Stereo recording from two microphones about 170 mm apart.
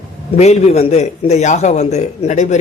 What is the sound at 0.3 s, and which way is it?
A man's voice, 40° left (ahead or behind).